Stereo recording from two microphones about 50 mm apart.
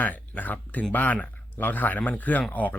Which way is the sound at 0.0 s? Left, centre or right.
Left.